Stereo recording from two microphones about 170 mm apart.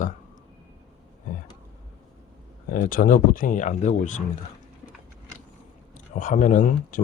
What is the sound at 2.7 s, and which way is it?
Speech, 55° left (ahead or behind).